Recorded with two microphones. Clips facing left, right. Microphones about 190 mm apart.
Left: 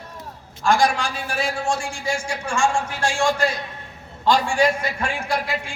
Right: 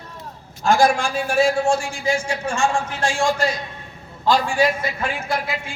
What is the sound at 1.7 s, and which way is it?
A man's voice, 5° right (ahead or behind).